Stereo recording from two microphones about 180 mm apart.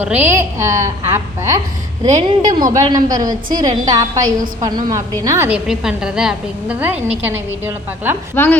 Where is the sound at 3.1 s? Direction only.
20° right (ahead or behind).